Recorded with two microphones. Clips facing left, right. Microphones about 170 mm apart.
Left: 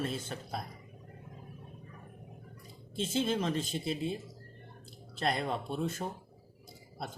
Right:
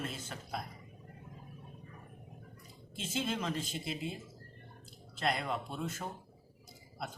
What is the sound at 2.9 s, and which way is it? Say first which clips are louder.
Speech: left 5 dB; 30° left (ahead or behind).